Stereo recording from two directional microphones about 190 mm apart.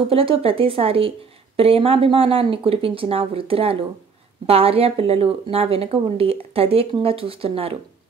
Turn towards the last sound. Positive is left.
turn(degrees=-30)  # may be behind; listen again after turning